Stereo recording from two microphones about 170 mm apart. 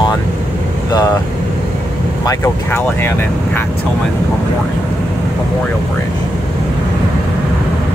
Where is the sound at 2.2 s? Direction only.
15° left (ahead or behind).